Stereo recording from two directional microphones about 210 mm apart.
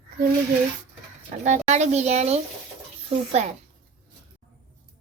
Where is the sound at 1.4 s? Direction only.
35° right (ahead or behind).